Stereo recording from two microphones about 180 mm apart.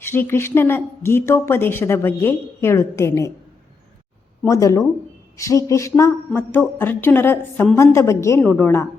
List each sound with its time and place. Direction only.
0.0 s a woman's voice: 15° left (ahead or behind)
4.4 s a woman's voice: 15° left (ahead or behind)